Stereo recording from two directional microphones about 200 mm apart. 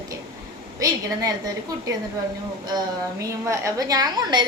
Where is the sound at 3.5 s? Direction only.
15° right (ahead or behind).